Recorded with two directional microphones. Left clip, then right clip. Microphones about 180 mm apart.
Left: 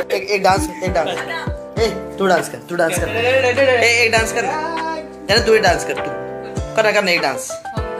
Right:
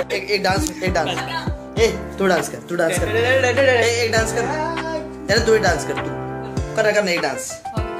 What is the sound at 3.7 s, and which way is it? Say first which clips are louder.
Speech: left 4 dB; centre (ahead or behind).